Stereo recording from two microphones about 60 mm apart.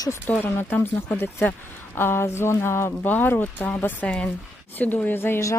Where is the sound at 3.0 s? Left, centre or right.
Left.